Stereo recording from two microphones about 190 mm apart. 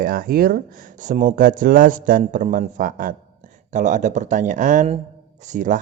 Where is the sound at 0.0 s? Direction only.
50° right (ahead or behind).